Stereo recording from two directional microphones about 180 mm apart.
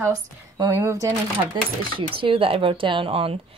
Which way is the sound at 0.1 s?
20° right (ahead or behind).